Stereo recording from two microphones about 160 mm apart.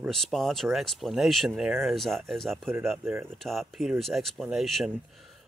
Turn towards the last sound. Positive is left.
turn(degrees=0)  # may be behind; listen again after turning